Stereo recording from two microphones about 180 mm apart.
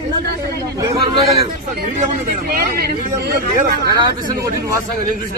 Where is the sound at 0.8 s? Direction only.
20° right (ahead or behind).